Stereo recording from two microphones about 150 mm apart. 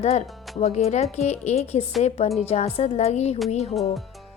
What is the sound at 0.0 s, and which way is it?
Speech, 45° left (ahead or behind).